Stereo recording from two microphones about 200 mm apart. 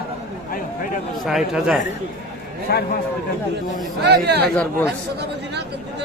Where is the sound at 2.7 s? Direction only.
50° left (ahead or behind).